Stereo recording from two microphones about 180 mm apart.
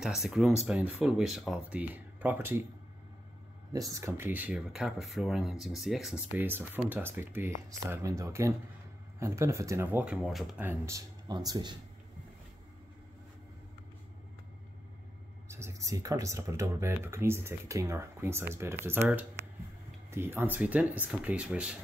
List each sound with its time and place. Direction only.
0.0 s speech: centre (ahead or behind)
3.7 s speech: 20° right (ahead or behind); by 10.5 s centre (ahead or behind)
10.6 s speech: 15° right (ahead or behind)
15.4 s speech: 15° right (ahead or behind)
20.1 s speech: 15° right (ahead or behind)